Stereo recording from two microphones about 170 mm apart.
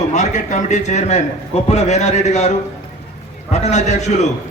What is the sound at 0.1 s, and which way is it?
A man's voice, 45° left (ahead or behind).